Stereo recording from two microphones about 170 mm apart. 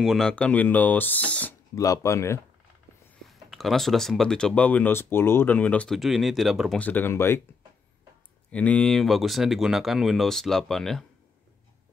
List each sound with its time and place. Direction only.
0.0 s speech: centre (ahead or behind)
1.8 s speech: 20° left (ahead or behind)
3.3 s speech: centre (ahead or behind)
6.8 s speech: 10° left (ahead or behind)
8.5 s speech: 5° left (ahead or behind)